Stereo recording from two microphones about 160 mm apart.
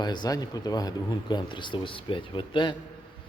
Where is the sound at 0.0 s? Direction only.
25° left (ahead or behind).